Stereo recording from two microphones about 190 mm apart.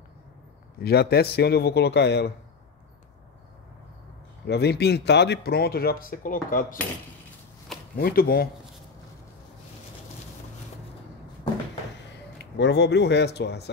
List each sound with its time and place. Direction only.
0.7 s speech: 55° left (ahead or behind)
4.5 s speech: 60° left (ahead or behind)
7.9 s speech: 50° left (ahead or behind)
12.4 s speech: 65° left (ahead or behind)